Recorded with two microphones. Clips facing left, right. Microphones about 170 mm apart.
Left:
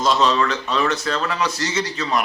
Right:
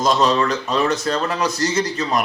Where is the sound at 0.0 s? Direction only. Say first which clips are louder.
Right 1 dB; 40° right (ahead or behind).